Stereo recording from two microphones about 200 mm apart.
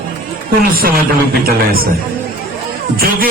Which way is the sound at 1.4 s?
50° right (ahead or behind).